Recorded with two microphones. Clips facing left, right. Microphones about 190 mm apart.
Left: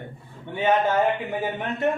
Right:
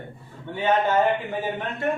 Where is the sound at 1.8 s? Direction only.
20° left (ahead or behind).